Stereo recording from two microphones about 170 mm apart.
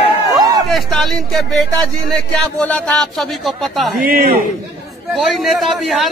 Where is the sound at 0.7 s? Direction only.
Centre (ahead or behind).